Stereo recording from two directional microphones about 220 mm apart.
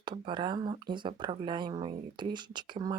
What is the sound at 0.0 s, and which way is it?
Speech, 20° right (ahead or behind).